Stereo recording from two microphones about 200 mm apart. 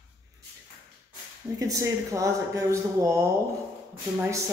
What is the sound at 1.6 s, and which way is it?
Speech, 15° right (ahead or behind).